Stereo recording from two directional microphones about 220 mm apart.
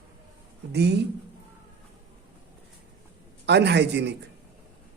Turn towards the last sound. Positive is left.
turn(degrees=-50)  # may be behind; listen again after turning